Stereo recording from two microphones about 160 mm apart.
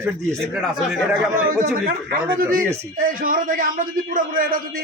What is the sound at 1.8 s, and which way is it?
A man's voice, 60° right (ahead or behind).